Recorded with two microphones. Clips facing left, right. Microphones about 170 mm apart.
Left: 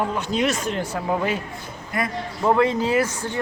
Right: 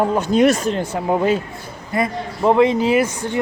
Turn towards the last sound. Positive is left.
turn(degrees=-15)  # may be behind; listen again after turning